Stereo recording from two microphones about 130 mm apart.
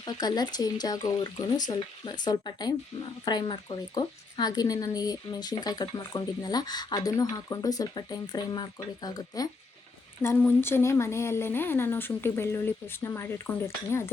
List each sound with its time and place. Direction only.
0.0 s speech: 30° left (ahead or behind)
10.2 s speech: 15° left (ahead or behind)